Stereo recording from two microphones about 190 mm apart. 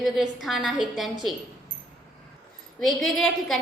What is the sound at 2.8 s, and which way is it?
Speech, centre (ahead or behind).